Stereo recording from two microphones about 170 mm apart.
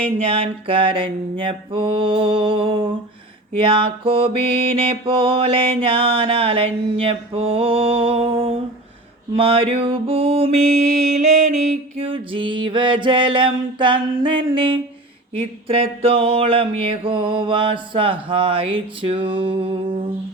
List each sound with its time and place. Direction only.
0.3 s mantra: 35° right (ahead or behind)